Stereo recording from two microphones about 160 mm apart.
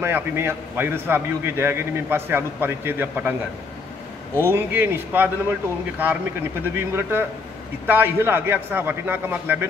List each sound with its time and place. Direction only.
0.0 s a man's voice: 15° right (ahead or behind)
4.4 s a man's voice: 15° right (ahead or behind)